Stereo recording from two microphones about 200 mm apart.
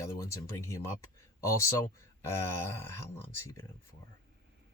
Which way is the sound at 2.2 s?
15° left (ahead or behind).